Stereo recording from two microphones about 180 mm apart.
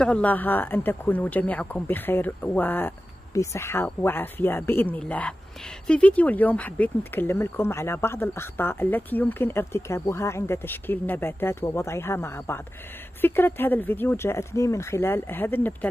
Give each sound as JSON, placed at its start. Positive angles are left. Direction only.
{"t": 0.0, "sound": "speech", "side_deg": 5}